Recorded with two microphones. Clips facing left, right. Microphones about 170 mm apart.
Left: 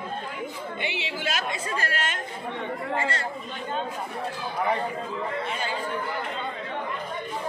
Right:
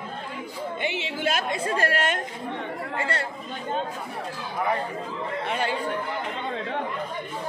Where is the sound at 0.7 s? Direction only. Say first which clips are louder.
Right 3 dB; 45° right (ahead or behind).